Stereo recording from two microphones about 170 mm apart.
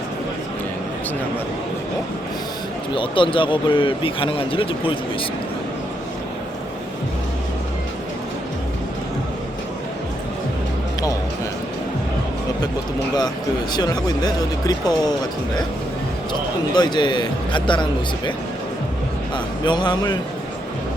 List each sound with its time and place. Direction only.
2.9 s speech: 30° left (ahead or behind)
13.7 s speech: 25° left (ahead or behind)
19.6 s speech: 25° left (ahead or behind)